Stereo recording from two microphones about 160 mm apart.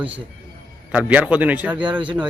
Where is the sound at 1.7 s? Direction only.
30° right (ahead or behind).